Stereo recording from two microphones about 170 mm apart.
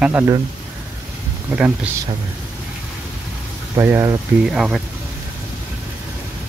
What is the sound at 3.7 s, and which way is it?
Speech, 15° right (ahead or behind).